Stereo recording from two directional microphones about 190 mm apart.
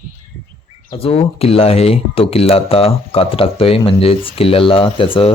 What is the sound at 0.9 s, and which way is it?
Speech, 30° left (ahead or behind).